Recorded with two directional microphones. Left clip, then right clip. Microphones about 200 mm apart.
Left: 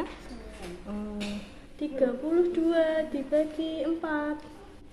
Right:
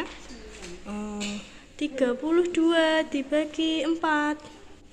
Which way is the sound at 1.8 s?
25° right (ahead or behind).